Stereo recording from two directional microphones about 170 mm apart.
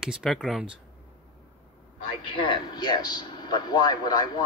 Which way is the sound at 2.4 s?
25° left (ahead or behind).